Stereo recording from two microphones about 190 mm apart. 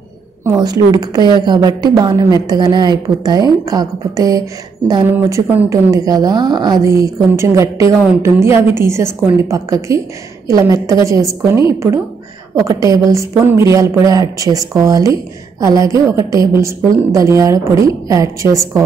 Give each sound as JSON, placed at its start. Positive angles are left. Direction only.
{"t": 0.5, "sound": "a woman's voice", "side_deg": -20}
{"t": 12.6, "sound": "a woman's voice", "side_deg": -15}